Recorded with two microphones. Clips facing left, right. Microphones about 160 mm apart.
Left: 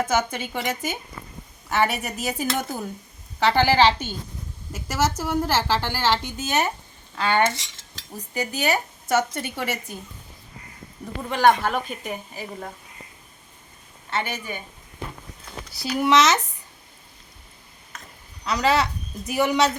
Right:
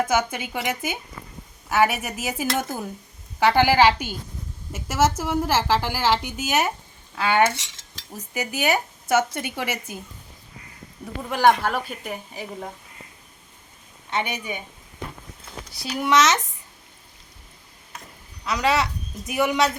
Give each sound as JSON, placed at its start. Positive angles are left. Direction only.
{"t": 0.0, "sound": "a woman's voice", "side_deg": -10}
{"t": 11.0, "sound": "a woman's voice", "side_deg": -5}
{"t": 12.3, "sound": "speech", "side_deg": 5}
{"t": 14.1, "sound": "a woman's voice", "side_deg": -15}
{"t": 15.7, "sound": "speech", "side_deg": 0}
{"t": 18.4, "sound": "speech", "side_deg": 0}